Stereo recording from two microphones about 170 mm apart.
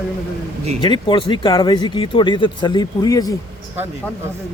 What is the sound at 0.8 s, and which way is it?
Speech, 30° left (ahead or behind).